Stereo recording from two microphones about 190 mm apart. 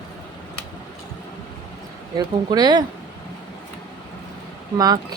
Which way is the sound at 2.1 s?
20° right (ahead or behind).